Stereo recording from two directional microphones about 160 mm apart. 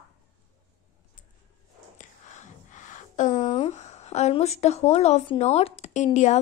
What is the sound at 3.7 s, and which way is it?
A woman's voice, 45° left (ahead or behind).